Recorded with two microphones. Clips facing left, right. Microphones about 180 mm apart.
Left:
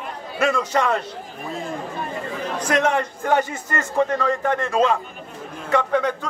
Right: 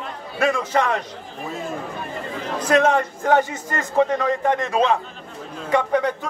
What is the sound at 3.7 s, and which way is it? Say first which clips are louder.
A man's voice: right 2 dB; 10° right (ahead or behind).